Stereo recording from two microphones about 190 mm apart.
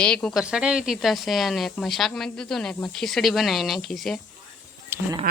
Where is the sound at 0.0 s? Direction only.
5° left (ahead or behind).